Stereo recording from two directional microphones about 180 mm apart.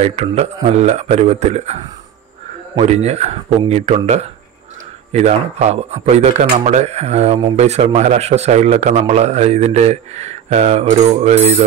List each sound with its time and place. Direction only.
0.0 s speech: 35° right (ahead or behind)
2.8 s speech: 35° right (ahead or behind)